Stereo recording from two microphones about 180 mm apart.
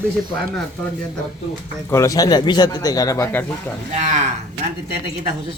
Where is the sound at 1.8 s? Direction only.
15° left (ahead or behind).